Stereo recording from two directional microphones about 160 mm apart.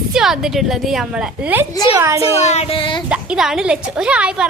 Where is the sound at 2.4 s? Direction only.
45° left (ahead or behind).